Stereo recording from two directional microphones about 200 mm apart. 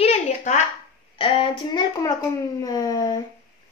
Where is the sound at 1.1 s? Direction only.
25° left (ahead or behind).